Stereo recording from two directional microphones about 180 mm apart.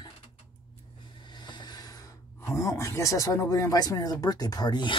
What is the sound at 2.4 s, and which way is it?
Speech, 15° left (ahead or behind).